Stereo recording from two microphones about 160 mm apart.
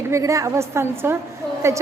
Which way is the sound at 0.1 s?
20° right (ahead or behind).